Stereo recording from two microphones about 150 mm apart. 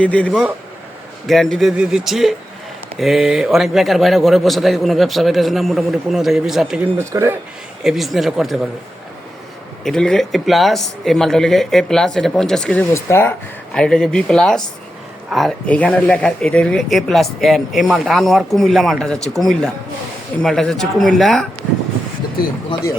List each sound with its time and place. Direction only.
0.0 s speech: 10° left (ahead or behind)
7.0 s speech: 20° right (ahead or behind)
7.8 s speech: centre (ahead or behind)
9.8 s speech: 5° left (ahead or behind)
12.9 s speech: 15° left (ahead or behind)
13.7 s speech: 5° left (ahead or behind)